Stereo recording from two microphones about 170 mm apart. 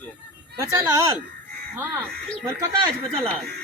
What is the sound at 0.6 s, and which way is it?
Speech, 15° right (ahead or behind).